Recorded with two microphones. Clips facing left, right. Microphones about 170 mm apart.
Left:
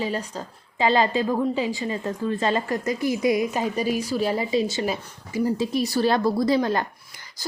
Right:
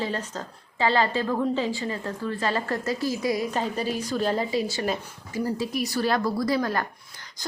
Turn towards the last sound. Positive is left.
turn(degrees=25)  # may be behind; listen again after turning